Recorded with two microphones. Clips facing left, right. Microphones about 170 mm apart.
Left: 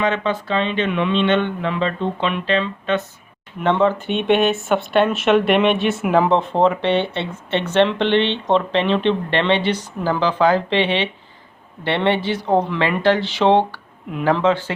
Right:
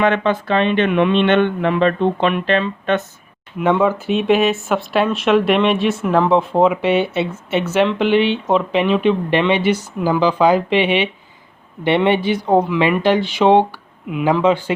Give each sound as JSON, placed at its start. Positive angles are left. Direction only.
{"t": 0.0, "sound": "speech", "side_deg": -55}
{"t": 3.6, "sound": "speech", "side_deg": -10}